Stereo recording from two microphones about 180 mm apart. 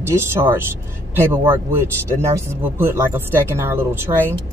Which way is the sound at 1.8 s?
15° right (ahead or behind).